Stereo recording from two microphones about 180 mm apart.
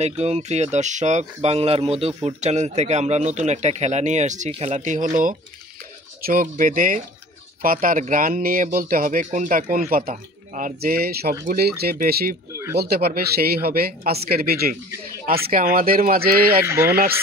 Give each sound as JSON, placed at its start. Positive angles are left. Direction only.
{"t": 0.0, "sound": "speech", "side_deg": -35}
{"t": 16.6, "sound": "speech", "side_deg": -15}